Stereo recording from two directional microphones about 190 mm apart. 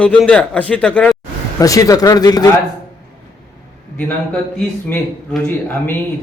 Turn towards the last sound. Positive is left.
turn(degrees=10)  # may be behind; listen again after turning